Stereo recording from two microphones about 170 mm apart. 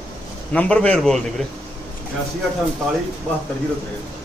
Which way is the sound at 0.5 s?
5° left (ahead or behind).